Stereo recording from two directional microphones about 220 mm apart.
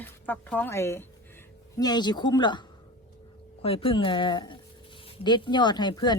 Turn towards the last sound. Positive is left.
turn(degrees=20)  # may be behind; listen again after turning